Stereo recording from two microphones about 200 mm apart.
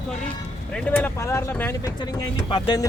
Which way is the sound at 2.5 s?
20° left (ahead or behind).